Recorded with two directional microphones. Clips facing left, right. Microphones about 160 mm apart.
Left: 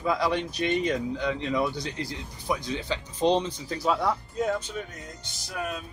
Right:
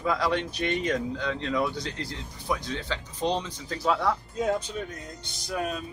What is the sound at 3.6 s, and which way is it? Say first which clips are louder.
Speech: right 2 dB; 5° left (ahead or behind).